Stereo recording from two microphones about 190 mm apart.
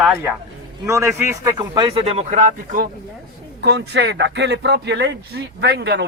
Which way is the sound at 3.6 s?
65° right (ahead or behind).